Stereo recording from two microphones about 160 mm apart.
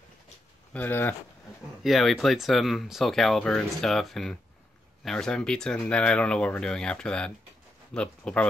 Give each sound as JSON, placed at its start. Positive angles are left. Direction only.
{"t": 0.7, "sound": "speech", "side_deg": 10}
{"t": 1.8, "sound": "speech", "side_deg": 0}